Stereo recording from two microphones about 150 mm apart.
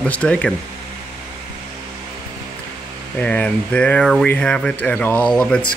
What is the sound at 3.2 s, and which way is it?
Speech, 10° left (ahead or behind).